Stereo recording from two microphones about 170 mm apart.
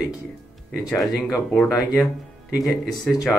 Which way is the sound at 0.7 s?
Centre (ahead or behind).